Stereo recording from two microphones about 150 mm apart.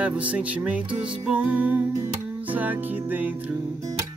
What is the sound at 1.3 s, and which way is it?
Music, 10° right (ahead or behind).